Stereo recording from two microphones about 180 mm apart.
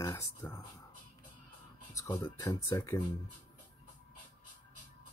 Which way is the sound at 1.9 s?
10° left (ahead or behind).